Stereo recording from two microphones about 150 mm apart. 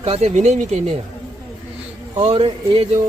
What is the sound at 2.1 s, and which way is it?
Speech, 40° right (ahead or behind).